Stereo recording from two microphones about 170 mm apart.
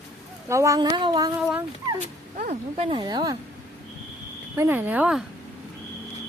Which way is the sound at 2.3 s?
40° right (ahead or behind).